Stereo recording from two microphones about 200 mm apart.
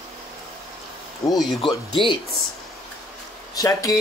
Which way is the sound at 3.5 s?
20° left (ahead or behind).